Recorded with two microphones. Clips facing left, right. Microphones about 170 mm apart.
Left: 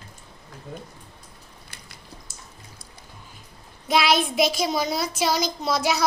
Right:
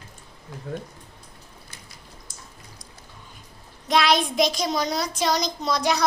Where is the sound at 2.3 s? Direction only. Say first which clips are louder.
Even; 5° left (ahead or behind).